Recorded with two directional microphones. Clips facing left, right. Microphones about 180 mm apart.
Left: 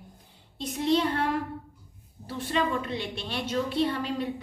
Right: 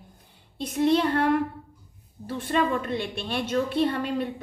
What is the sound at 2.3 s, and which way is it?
A woman's voice, 55° right (ahead or behind).